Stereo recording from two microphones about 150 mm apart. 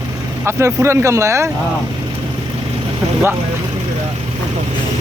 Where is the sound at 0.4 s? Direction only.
20° right (ahead or behind).